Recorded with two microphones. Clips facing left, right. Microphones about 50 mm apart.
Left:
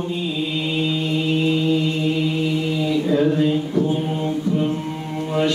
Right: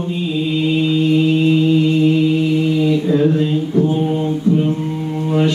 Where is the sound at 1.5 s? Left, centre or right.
Centre.